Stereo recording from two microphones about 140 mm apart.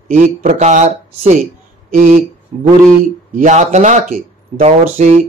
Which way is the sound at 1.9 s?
80° right.